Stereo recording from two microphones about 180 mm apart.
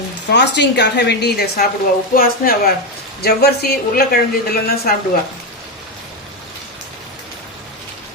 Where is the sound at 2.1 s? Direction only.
55° left (ahead or behind).